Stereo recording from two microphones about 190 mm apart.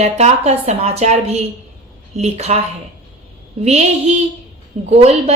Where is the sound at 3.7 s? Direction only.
35° right (ahead or behind).